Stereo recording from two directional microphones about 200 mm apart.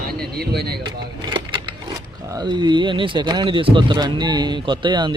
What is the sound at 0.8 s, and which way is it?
Speech, 20° right (ahead or behind).